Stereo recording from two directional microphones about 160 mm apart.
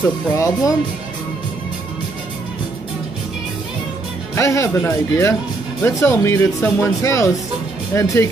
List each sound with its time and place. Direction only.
0.0 s speech: 20° left (ahead or behind)
4.4 s speech: 20° left (ahead or behind)